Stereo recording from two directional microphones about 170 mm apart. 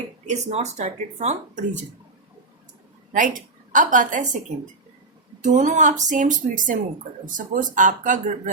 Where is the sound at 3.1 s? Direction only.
50° right (ahead or behind).